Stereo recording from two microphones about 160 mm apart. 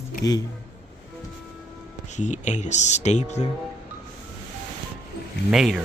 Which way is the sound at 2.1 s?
50° left (ahead or behind).